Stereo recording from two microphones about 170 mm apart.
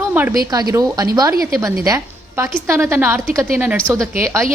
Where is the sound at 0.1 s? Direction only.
10° right (ahead or behind).